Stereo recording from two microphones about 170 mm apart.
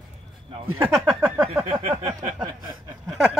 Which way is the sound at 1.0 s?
10° right (ahead or behind).